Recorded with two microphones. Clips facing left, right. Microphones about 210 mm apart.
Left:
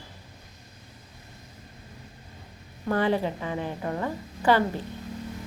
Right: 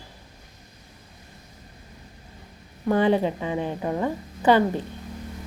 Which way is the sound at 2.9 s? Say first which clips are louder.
Right 4 dB; 20° right (ahead or behind).